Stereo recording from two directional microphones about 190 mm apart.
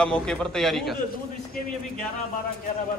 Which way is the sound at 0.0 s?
5° left (ahead or behind).